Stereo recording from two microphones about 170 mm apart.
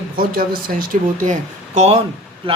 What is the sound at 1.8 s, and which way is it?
Speech, 40° right (ahead or behind).